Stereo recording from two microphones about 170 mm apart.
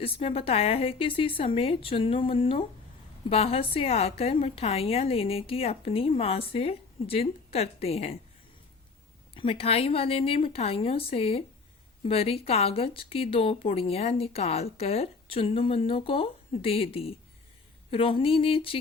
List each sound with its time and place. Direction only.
0.0 s speech: 35° left (ahead or behind)
9.3 s speech: 30° left (ahead or behind)